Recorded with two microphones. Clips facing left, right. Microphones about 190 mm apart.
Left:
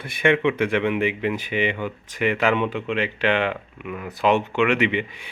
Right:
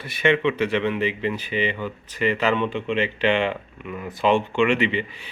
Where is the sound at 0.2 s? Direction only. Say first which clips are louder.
Left 1 dB; 10° left (ahead or behind).